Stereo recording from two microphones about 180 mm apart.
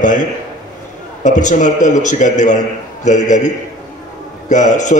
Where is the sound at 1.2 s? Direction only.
45° left (ahead or behind).